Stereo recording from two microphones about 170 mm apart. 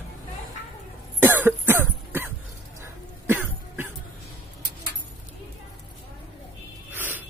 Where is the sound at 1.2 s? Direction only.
10° right (ahead or behind).